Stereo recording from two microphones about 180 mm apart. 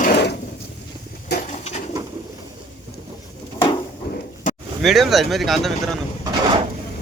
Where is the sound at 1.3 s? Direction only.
65° left (ahead or behind).